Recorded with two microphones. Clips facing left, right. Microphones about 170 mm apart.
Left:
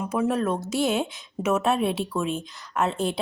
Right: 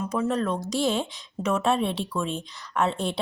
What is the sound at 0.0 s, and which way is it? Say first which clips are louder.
A woman's voice: left 1 dB; 10° left (ahead or behind).